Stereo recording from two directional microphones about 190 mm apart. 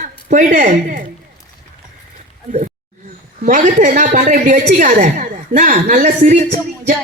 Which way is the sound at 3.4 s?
40° right (ahead or behind).